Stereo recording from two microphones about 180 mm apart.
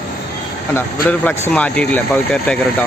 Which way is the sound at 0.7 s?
10° left (ahead or behind).